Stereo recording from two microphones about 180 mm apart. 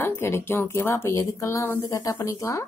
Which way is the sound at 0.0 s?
15° left (ahead or behind).